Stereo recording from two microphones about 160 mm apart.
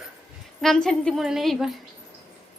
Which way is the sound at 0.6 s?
5° left (ahead or behind).